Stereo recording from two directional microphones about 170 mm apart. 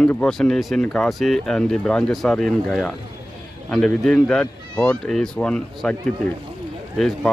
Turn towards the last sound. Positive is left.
turn(degrees=0)  # may be behind; listen again after turning